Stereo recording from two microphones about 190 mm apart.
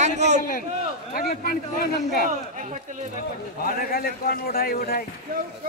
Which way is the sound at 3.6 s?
50° left (ahead or behind).